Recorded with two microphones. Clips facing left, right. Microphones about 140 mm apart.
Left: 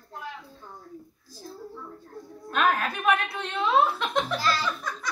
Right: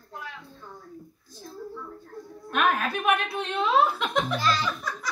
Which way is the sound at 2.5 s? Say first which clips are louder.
Even; 15° right (ahead or behind).